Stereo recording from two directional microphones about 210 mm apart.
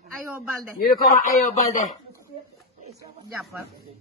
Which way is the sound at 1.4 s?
35° left (ahead or behind).